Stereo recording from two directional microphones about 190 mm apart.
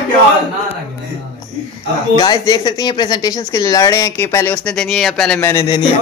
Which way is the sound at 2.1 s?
20° left (ahead or behind).